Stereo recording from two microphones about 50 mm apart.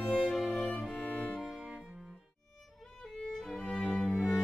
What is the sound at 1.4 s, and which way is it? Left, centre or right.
Cello, centre.